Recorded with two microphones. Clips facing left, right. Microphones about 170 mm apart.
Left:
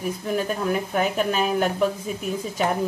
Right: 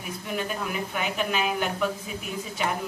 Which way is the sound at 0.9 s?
40° left (ahead or behind).